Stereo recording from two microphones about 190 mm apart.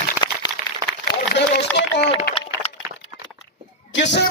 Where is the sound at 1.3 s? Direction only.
65° left (ahead or behind).